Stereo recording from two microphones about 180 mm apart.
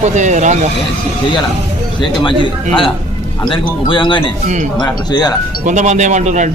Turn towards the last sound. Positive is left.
turn(degrees=-40)  # may be behind; listen again after turning